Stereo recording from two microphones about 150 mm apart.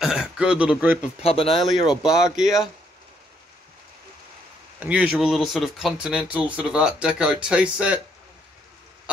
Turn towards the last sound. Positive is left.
turn(degrees=-5)  # may be behind; listen again after turning